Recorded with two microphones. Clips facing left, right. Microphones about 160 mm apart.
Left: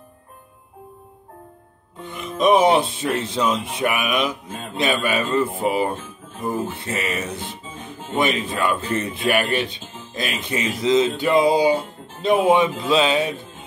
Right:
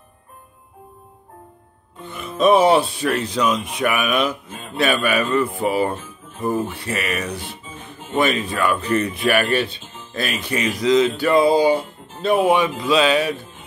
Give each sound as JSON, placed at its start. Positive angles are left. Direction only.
{"t": 2.0, "sound": "speech", "side_deg": 20}